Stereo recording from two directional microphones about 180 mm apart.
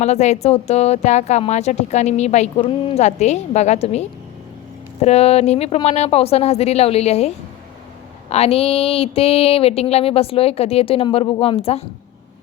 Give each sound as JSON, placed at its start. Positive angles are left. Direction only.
{"t": 0.0, "sound": "a woman's voice", "side_deg": 40}